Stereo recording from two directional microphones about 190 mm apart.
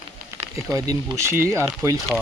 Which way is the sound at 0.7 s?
15° right (ahead or behind).